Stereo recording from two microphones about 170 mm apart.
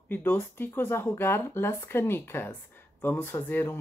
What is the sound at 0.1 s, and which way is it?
Speech, 10° left (ahead or behind).